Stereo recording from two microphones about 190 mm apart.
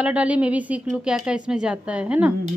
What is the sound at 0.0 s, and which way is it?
Speech, 5° right (ahead or behind).